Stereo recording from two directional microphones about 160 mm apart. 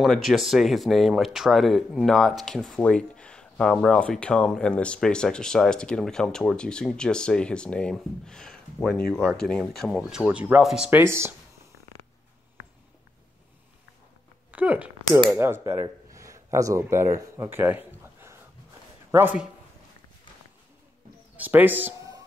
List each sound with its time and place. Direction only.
0.0 s speech: centre (ahead or behind); by 11.3 s 15° right (ahead or behind)
14.5 s a man's voice: 10° right (ahead or behind)
21.4 s speech: 10° right (ahead or behind)